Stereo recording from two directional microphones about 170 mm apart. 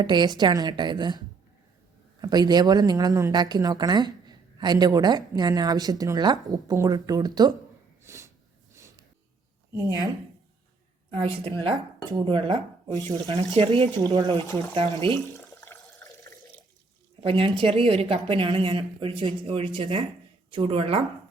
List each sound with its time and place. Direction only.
0.0 s a woman's voice: 25° right (ahead or behind)
2.2 s a woman's voice: 25° right (ahead or behind)
8.1 s snort: 15° right (ahead or behind)
11.1 s a woman's voice: 35° right (ahead or behind)
15.3 s water: 20° left (ahead or behind)
17.2 s a woman's voice: 30° right (ahead or behind)